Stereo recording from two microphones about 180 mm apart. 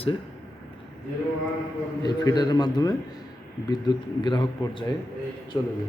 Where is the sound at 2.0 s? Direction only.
20° left (ahead or behind).